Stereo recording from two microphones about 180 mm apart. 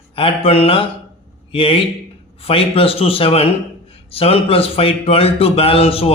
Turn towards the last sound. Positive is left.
turn(degrees=30)  # may be behind; listen again after turning